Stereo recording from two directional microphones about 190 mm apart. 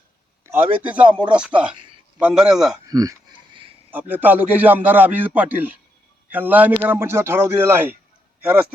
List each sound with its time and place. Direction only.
0.4 s a man's voice: 10° right (ahead or behind)
1.0 s speech: 25° right (ahead or behind)
1.4 s a man's voice: 5° right (ahead or behind)
2.8 s a sound: 20° right (ahead or behind)
3.9 s speech: 10° right (ahead or behind)